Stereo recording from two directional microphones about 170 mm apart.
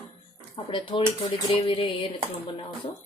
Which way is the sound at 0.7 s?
30° left (ahead or behind).